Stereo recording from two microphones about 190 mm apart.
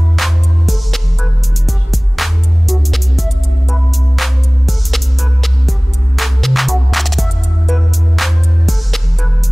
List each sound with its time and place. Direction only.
0.1 s music: centre (ahead or behind)